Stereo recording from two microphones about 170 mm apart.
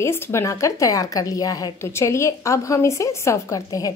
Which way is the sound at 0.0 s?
15° left (ahead or behind).